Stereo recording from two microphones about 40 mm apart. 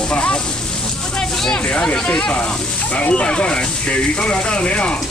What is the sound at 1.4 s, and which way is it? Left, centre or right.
Speech, left.